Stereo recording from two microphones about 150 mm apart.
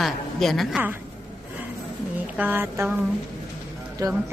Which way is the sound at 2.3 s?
10° right (ahead or behind).